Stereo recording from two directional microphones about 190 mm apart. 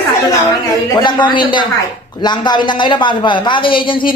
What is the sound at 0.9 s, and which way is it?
A woman's voice, 25° left (ahead or behind).